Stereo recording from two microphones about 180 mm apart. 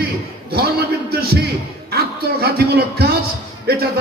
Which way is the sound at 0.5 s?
60° right (ahead or behind).